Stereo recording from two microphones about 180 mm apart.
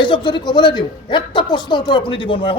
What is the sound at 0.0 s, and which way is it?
Speech, 25° left (ahead or behind).